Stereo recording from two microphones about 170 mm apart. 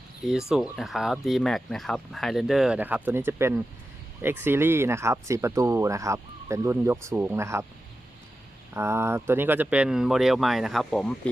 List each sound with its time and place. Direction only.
0.5 s speech: centre (ahead or behind)
8.7 s speech: 15° right (ahead or behind); by 11.1 s centre (ahead or behind)